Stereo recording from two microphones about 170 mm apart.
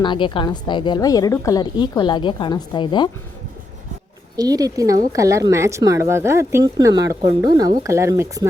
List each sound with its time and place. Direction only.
0.0 s a woman's voice: 30° left (ahead or behind)
4.4 s speech: 20° right (ahead or behind)